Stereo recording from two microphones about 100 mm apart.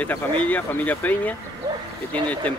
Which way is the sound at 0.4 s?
15° left (ahead or behind).